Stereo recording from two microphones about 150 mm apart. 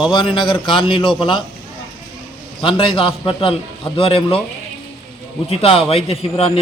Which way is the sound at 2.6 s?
35° left (ahead or behind).